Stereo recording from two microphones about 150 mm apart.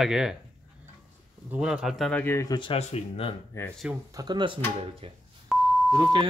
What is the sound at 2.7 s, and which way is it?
Speech, 40° left (ahead or behind).